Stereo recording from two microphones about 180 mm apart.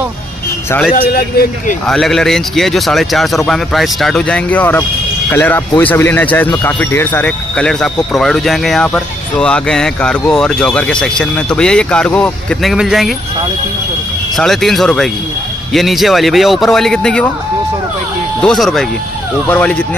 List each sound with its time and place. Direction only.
1.1 s speech: 60° left (ahead or behind)
1.9 s speech: centre (ahead or behind)
14.3 s speech: centre (ahead or behind)
18.4 s speech: centre (ahead or behind)